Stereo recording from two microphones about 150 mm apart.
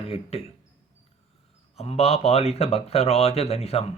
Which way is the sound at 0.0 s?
40° left (ahead or behind).